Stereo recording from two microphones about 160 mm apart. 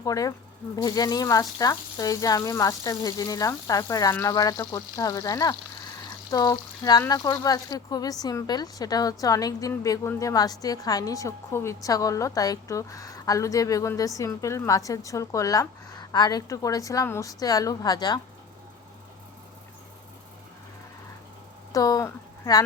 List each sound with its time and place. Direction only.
0.0 s speech: 20° left (ahead or behind)
21.7 s speech: 20° left (ahead or behind)